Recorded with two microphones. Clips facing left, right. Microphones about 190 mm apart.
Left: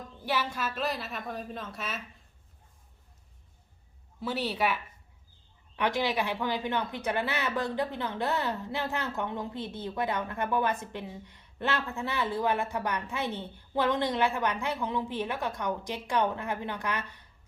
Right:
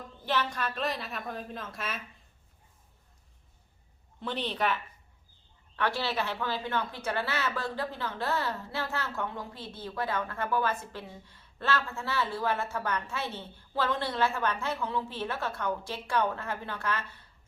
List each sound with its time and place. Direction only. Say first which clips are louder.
0.3 s a woman's voice: even; 5° left (ahead or behind)
4.2 s speech: left 2 dB; 5° left (ahead or behind)